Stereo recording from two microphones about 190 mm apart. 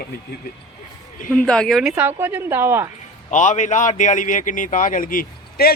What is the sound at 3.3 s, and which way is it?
A man's voice, 40° left (ahead or behind).